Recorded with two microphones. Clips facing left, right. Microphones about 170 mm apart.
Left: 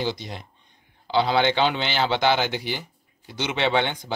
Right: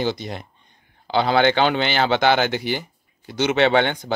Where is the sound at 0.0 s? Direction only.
55° right (ahead or behind).